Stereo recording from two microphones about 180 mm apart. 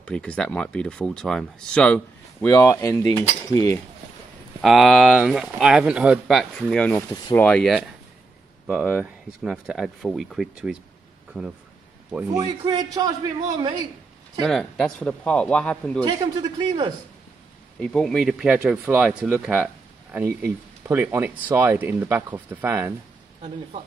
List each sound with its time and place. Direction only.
0.0 s speech: 5° left (ahead or behind)
4.6 s speech: centre (ahead or behind)
12.3 s a man's voice: 20° right (ahead or behind)
14.4 s speech: centre (ahead or behind)
16.0 s a man's voice: 25° right (ahead or behind)
17.7 s speech: 5° left (ahead or behind); by 22.9 s 10° right (ahead or behind)